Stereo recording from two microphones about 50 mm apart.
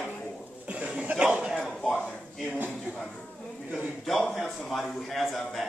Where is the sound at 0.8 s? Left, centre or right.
Right.